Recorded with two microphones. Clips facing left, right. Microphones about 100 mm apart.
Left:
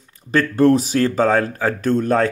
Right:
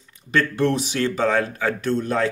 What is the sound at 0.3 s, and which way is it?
Speech, 40° left (ahead or behind).